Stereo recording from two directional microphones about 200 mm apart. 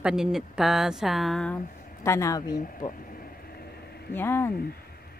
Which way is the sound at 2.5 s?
45° left (ahead or behind).